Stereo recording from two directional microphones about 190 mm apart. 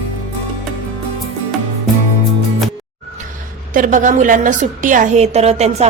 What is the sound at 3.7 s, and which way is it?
A woman's voice, 45° right (ahead or behind).